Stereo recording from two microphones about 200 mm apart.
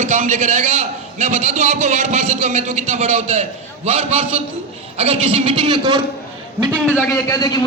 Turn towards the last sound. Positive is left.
turn(degrees=20)  # may be behind; listen again after turning